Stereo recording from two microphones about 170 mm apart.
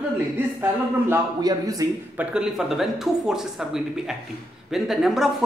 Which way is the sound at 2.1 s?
5° right (ahead or behind).